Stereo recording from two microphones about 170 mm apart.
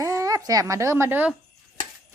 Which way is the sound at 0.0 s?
20° right (ahead or behind).